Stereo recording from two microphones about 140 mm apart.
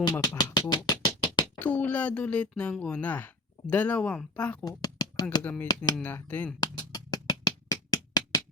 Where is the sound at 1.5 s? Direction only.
10° left (ahead or behind).